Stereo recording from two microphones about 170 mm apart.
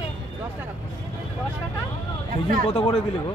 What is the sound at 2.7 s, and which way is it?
Speech, 35° left (ahead or behind).